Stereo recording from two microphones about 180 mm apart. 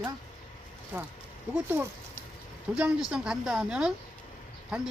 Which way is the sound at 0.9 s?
10° right (ahead or behind).